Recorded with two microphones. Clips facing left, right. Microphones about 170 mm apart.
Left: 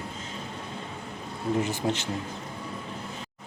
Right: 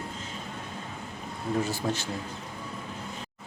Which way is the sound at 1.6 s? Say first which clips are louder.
Left 2 dB; 20° left (ahead or behind).